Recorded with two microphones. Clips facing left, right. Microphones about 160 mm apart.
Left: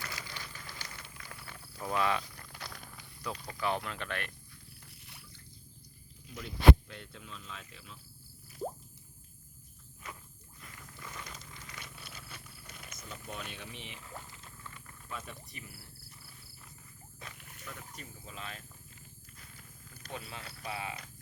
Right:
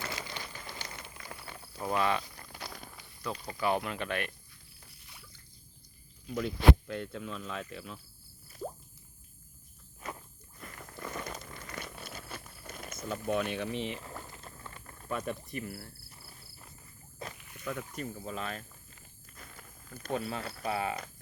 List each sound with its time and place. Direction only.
0.0 s a sound: 25° right (ahead or behind)
1.9 s speech: centre (ahead or behind)
2.3 s a sound: 15° right (ahead or behind)
3.3 s speech: 5° right (ahead or behind)
6.3 s speech: 60° right (ahead or behind)
10.6 s purr: 50° right (ahead or behind)
14.0 s boat: 45° right (ahead or behind)
15.1 s speech: 55° right (ahead or behind); by 16.5 s 40° right (ahead or behind)
17.7 s speech: 60° right (ahead or behind)
19.4 s a sound: 50° right (ahead or behind)